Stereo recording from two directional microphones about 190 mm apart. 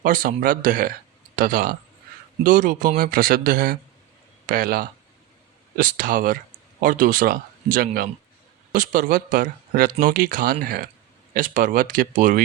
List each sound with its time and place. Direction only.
0.0 s speech: 45° right (ahead or behind)